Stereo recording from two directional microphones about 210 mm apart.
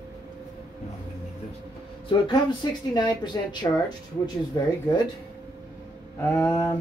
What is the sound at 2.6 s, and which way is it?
A woman's voice, 20° left (ahead or behind).